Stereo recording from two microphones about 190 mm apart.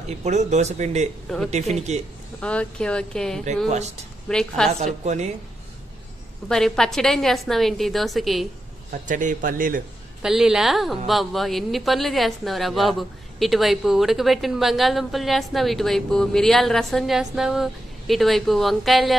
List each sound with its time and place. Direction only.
0.2 s speech: 35° right (ahead or behind)
2.4 s a woman's voice: 5° left (ahead or behind)
3.6 s speech: 35° right (ahead or behind)
4.3 s a woman's voice: 5° left (ahead or behind)
5.0 s speech: 35° right (ahead or behind)
6.5 s a woman's voice: centre (ahead or behind)
8.9 s speech: 45° right (ahead or behind)
10.2 s a woman's voice: 5° right (ahead or behind)